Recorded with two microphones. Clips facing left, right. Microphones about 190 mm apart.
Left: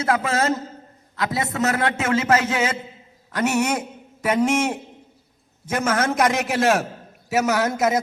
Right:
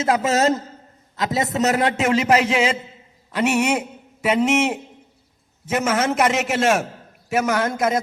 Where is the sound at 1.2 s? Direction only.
20° right (ahead or behind).